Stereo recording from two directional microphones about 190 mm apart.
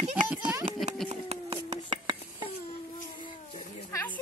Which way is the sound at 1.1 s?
30° right (ahead or behind).